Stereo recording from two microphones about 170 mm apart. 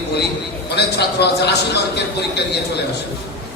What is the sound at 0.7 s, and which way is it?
A man's voice, 75° left (ahead or behind).